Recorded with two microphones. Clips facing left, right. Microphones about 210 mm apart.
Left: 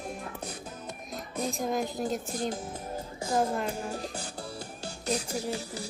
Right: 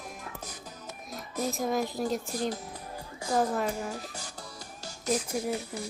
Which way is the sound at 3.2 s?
25° left (ahead or behind).